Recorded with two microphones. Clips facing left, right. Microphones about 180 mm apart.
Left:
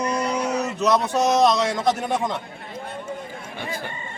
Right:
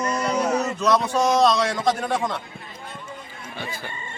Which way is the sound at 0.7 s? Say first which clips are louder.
Left 3 dB; 15° left (ahead or behind).